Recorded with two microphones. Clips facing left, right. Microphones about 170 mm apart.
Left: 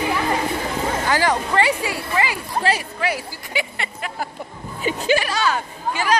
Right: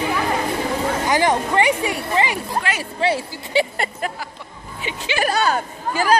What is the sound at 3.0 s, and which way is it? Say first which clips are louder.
Speech: right 4 dB; 30° right (ahead or behind).